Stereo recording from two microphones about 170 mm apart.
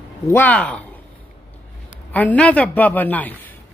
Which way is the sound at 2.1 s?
10° left (ahead or behind).